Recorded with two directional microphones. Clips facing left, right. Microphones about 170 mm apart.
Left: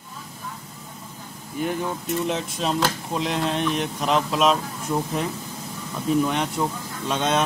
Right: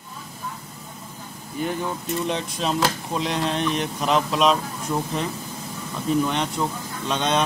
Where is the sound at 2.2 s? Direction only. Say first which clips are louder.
Right 1 dB; centre (ahead or behind).